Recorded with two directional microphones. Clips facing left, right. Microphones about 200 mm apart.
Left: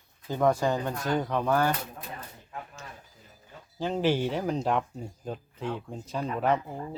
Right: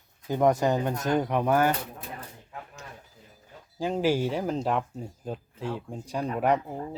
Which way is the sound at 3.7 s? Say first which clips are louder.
Right 1 dB; 10° right (ahead or behind).